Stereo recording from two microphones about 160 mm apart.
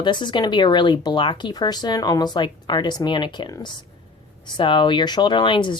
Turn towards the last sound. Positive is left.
turn(degrees=30)  # may be behind; listen again after turning